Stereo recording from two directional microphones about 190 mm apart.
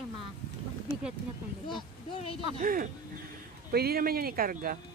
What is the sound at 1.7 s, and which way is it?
Speech, 30° left (ahead or behind).